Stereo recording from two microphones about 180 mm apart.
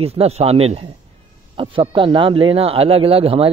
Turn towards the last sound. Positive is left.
turn(degrees=-30)  # may be behind; listen again after turning